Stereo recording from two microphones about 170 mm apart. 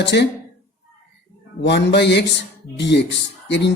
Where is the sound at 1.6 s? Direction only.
90° left.